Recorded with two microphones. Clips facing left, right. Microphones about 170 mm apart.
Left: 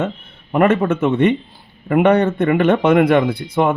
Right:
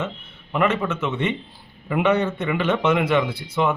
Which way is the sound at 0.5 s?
50° left (ahead or behind).